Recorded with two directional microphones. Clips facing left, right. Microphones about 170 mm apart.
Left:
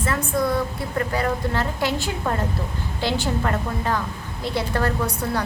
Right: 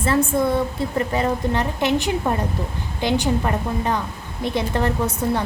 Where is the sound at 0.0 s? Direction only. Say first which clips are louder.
Right 4 dB; 25° right (ahead or behind).